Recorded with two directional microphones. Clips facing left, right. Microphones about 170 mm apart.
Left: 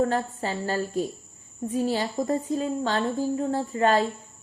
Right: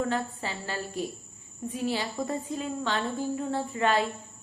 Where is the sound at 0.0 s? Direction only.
40° left (ahead or behind).